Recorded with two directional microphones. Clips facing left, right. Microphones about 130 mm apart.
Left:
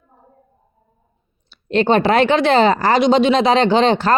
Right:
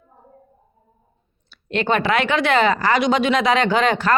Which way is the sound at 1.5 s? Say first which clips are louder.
Left 5 dB; 30° left (ahead or behind).